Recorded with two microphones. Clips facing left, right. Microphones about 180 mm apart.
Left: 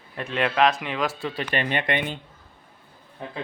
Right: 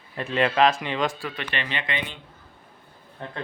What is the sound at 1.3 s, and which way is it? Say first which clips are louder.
Speech: left 5 dB; 40° left (ahead or behind).